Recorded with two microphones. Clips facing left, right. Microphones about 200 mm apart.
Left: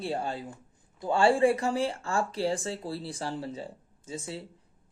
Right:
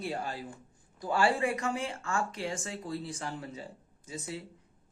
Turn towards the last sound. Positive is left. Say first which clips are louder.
# left 2 dB
turn(degrees=30)  # may be behind; listen again after turning